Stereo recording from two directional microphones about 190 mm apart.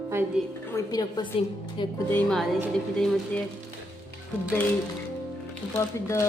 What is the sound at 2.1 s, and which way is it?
Speech, centre (ahead or behind).